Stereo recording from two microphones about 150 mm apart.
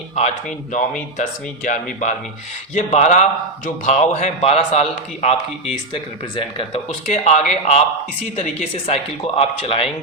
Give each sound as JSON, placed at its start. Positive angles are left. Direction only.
{"t": 0.2, "sound": "a man's voice", "side_deg": 55}
{"t": 8.9, "sound": "speech", "side_deg": 40}